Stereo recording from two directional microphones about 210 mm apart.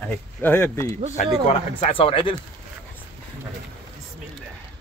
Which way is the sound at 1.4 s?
25° left (ahead or behind).